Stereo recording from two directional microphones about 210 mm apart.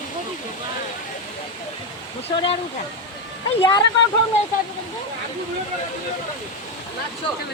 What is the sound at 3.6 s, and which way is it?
Speech, 20° left (ahead or behind).